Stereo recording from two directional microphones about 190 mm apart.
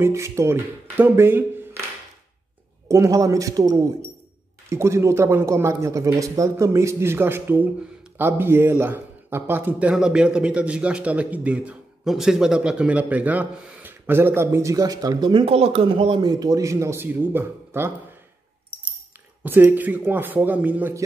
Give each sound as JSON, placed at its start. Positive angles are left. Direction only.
{"t": 0.0, "sound": "a man's voice", "side_deg": -15}
{"t": 2.9, "sound": "a man's voice", "side_deg": -15}
{"t": 19.4, "sound": "a man's voice", "side_deg": -10}